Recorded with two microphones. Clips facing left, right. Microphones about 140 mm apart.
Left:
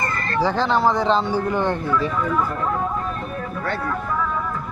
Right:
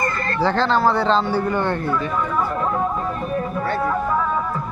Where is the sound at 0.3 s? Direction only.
10° left (ahead or behind).